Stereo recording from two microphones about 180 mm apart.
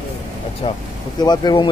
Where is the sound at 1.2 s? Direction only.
25° left (ahead or behind).